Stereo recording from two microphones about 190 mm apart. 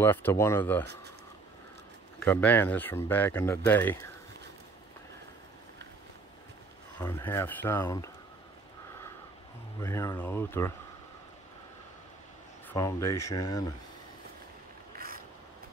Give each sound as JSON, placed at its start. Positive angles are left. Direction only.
{"t": 0.0, "sound": "speech", "side_deg": 10}
{"t": 2.1, "sound": "speech", "side_deg": 10}
{"t": 7.0, "sound": "speech", "side_deg": 15}
{"t": 9.8, "sound": "speech", "side_deg": 15}
{"t": 12.6, "sound": "speech", "side_deg": 15}
{"t": 15.0, "sound": "a sound", "side_deg": -50}